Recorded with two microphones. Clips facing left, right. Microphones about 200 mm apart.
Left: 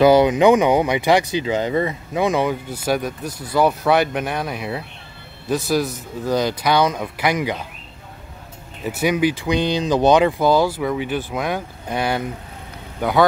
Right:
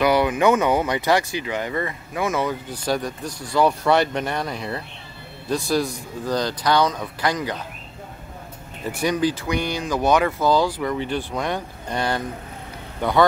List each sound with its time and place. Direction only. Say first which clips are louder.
0.0 s speech: left 5 dB; 25° left (ahead or behind)
8.8 s speech: left 3 dB; 5° left (ahead or behind)